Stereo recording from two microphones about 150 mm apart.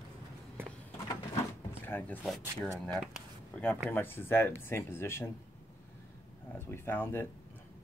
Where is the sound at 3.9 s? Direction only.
15° left (ahead or behind).